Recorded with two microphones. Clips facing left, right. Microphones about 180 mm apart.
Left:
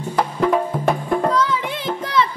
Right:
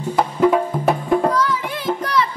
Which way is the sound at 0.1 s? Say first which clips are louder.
Right 3 dB; 5° right (ahead or behind).